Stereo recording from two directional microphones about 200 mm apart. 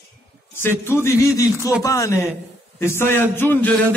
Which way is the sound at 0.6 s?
10° left (ahead or behind).